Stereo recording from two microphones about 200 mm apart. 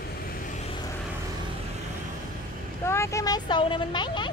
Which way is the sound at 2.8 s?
15° left (ahead or behind).